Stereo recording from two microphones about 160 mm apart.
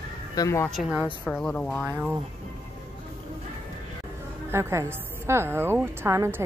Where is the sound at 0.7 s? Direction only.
5° right (ahead or behind).